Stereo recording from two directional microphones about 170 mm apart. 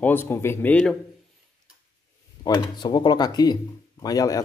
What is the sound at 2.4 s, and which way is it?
Speech, 25° left (ahead or behind).